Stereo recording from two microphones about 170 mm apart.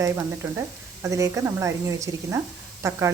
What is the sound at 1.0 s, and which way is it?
A woman's voice, 20° right (ahead or behind).